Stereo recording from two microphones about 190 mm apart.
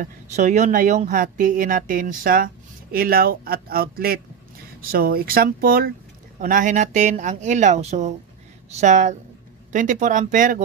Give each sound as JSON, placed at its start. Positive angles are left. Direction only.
{"t": 0.0, "sound": "speech", "side_deg": -40}